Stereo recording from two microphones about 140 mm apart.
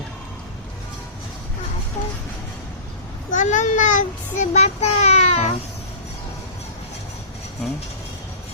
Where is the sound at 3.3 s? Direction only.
60° left (ahead or behind).